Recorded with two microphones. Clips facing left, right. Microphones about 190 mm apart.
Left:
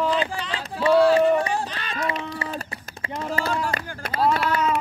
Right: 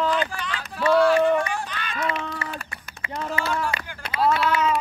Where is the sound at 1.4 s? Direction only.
35° left (ahead or behind).